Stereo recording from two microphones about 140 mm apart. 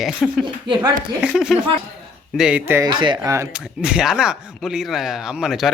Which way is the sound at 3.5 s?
5° right (ahead or behind).